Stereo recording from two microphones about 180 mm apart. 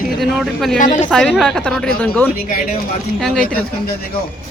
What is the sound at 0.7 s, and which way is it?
Speech, 45° left (ahead or behind).